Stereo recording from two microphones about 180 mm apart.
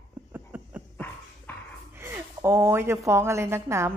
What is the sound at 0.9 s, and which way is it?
Dog, 10° left (ahead or behind).